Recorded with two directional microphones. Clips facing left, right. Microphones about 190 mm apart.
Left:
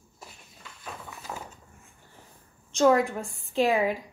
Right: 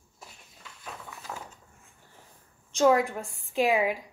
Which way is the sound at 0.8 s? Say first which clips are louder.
Left 1 dB; 5° left (ahead or behind).